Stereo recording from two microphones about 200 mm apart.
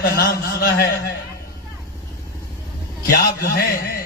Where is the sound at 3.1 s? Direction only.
50° left (ahead or behind).